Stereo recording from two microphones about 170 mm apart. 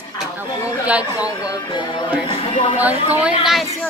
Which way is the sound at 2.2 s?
30° left (ahead or behind).